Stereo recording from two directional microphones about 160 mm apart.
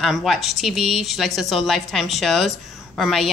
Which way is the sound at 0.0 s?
Centre (ahead or behind).